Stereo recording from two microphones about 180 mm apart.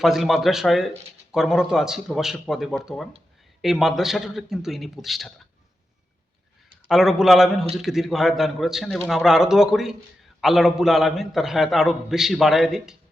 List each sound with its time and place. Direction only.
0.0 s a man's voice: centre (ahead or behind)
6.8 s a man's voice: centre (ahead or behind)